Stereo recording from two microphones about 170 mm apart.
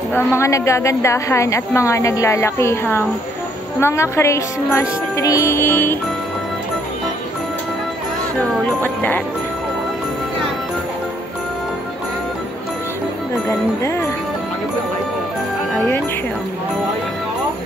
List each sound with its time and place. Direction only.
0.1 s a woman's voice: 15° left (ahead or behind)
8.4 s a woman's voice: 10° left (ahead or behind)